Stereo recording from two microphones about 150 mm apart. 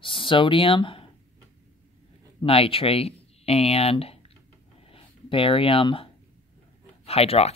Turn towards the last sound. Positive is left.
turn(degrees=40)  # may be behind; listen again after turning